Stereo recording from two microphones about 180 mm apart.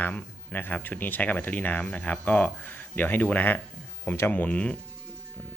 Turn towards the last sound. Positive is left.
turn(degrees=10)  # may be behind; listen again after turning